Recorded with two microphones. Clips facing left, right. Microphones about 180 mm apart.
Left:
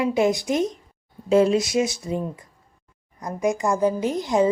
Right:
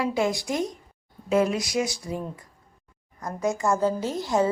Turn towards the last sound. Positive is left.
turn(degrees=15)  # may be behind; listen again after turning